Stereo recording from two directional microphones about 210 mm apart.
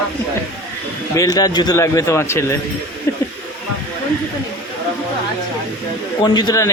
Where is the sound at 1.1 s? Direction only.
15° left (ahead or behind).